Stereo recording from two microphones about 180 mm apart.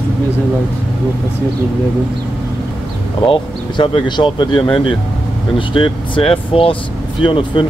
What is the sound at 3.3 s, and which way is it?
Speech, 30° left (ahead or behind).